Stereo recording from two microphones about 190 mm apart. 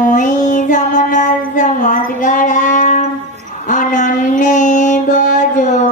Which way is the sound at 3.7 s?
40° left (ahead or behind).